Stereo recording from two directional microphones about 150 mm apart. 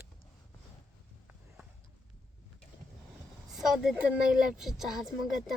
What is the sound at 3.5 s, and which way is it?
A woman's voice, centre (ahead or behind).